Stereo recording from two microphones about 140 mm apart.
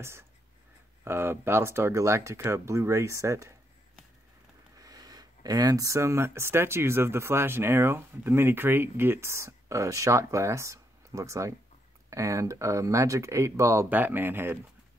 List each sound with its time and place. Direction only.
1.0 s speech: 15° right (ahead or behind)
4.7 s speech: 25° right (ahead or behind)